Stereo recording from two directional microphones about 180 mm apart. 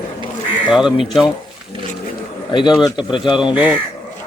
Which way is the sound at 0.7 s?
Centre (ahead or behind).